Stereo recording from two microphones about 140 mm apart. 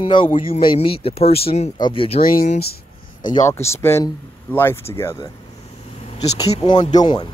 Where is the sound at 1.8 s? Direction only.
40° left (ahead or behind).